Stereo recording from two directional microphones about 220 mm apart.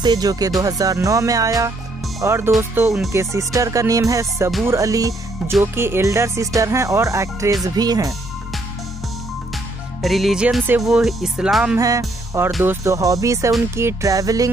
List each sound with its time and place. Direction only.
0.0 s speech: 20° right (ahead or behind)
10.0 s speech: centre (ahead or behind)
11.8 s music: 15° right (ahead or behind)
12.4 s speech: centre (ahead or behind)
12.8 s speech: 15° right (ahead or behind)